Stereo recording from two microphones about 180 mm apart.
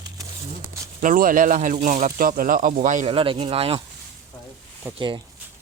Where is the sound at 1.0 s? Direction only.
50° right (ahead or behind).